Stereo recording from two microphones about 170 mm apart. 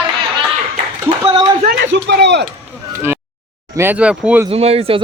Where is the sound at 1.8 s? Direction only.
90° right.